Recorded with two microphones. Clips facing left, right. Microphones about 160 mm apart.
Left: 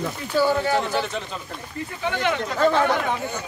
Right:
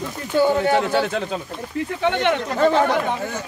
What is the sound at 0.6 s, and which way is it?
Speech, 65° right (ahead or behind).